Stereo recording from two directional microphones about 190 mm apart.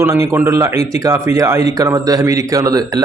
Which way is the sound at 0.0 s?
15° right (ahead or behind).